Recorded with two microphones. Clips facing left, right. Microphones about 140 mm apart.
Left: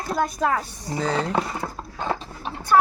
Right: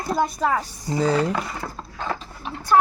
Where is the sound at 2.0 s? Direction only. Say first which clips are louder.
Left 2 dB; 30° left (ahead or behind).